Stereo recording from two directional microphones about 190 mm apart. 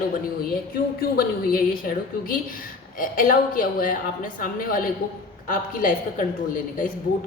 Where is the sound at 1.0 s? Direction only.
50° left (ahead or behind).